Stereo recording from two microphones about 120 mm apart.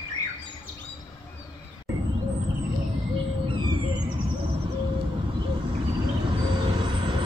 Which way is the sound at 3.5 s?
40° right (ahead or behind).